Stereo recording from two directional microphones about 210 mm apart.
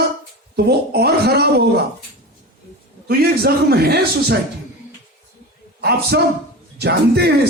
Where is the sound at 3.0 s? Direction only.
45° right (ahead or behind).